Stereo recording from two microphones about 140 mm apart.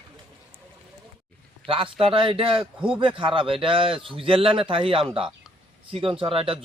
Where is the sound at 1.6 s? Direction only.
40° right (ahead or behind).